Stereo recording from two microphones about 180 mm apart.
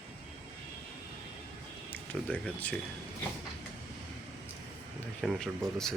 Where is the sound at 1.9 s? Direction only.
10° left (ahead or behind).